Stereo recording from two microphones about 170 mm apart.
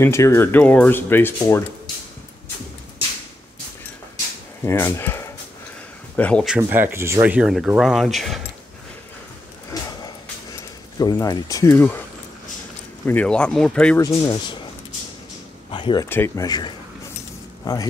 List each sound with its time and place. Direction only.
0.0 s speech: 15° left (ahead or behind)
4.6 s speech: 15° left (ahead or behind)
6.1 s speech: 10° left (ahead or behind)
6.4 s speech: 10° right (ahead or behind)
9.7 s a sound: 20° left (ahead or behind)
10.5 s speech: 20° left (ahead or behind)
13.0 s speech: 10° left (ahead or behind)
13.9 s speech: 20° left (ahead or behind)
15.7 s speech: 25° left (ahead or behind)
16.1 s speech: 15° left (ahead or behind)